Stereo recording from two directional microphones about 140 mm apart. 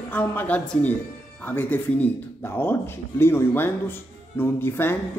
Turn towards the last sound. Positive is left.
turn(degrees=15)  # may be behind; listen again after turning